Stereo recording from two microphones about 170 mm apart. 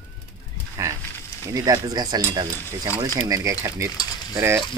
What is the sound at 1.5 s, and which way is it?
Speech, 20° right (ahead or behind).